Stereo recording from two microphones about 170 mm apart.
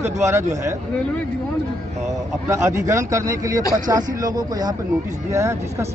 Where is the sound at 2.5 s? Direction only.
15° right (ahead or behind).